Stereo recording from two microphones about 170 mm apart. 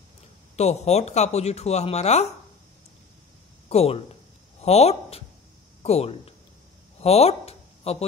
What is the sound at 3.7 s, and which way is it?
Speech, 35° left (ahead or behind).